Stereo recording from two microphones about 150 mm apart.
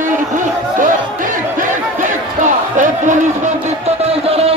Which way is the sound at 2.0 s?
55° right (ahead or behind).